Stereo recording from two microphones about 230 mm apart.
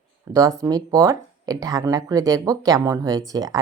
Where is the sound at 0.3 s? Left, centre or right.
Centre.